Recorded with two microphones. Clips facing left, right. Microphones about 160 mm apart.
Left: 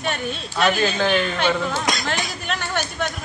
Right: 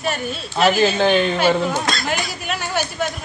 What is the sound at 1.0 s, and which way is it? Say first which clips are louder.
Speech: right 4 dB; 20° right (ahead or behind).